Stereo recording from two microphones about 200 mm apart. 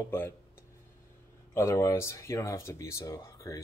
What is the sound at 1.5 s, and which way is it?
Speech, 15° left (ahead or behind).